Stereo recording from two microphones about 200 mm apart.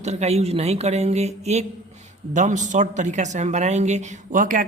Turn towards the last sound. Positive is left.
turn(degrees=-40)  # may be behind; listen again after turning